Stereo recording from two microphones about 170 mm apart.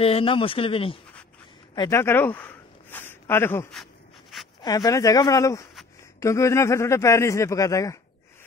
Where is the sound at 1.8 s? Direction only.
15° left (ahead or behind).